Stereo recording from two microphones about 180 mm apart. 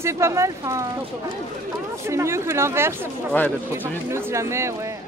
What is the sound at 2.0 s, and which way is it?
A woman's voice, 15° right (ahead or behind).